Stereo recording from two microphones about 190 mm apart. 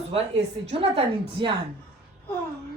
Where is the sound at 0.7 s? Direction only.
30° right (ahead or behind).